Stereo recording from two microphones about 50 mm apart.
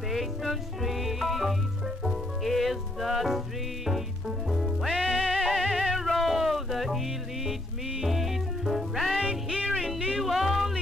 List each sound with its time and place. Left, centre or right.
0.1 s music: centre
9.2 s music: centre
10.1 s music: centre